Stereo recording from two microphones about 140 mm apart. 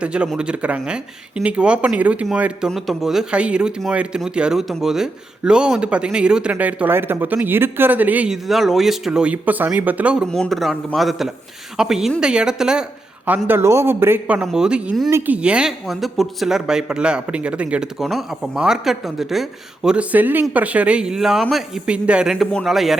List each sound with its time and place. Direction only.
0.0 s speech: 5° right (ahead or behind)
10.2 s speech: 5° left (ahead or behind)
13.5 s speech: 20° right (ahead or behind); by 23.0 s centre (ahead or behind)